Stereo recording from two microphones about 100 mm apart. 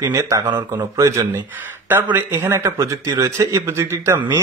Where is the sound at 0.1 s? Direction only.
30° right (ahead or behind).